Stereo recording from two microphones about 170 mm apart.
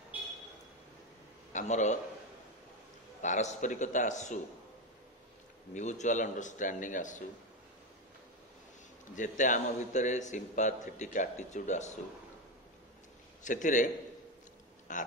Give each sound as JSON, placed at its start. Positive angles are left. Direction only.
{"t": 1.5, "sound": "a man's voice", "side_deg": 45}
{"t": 3.2, "sound": "a man's voice", "side_deg": 45}
{"t": 5.8, "sound": "a man's voice", "side_deg": 45}
{"t": 9.1, "sound": "a man's voice", "side_deg": 50}
{"t": 13.4, "sound": "a man's voice", "side_deg": 50}
{"t": 14.9, "sound": "a man's voice", "side_deg": 50}